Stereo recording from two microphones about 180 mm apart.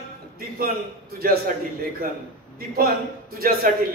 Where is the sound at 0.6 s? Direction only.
55° right (ahead or behind).